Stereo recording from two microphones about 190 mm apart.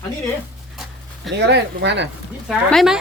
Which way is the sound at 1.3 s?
65° right (ahead or behind).